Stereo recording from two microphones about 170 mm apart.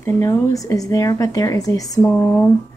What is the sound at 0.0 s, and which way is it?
Speech, 15° left (ahead or behind).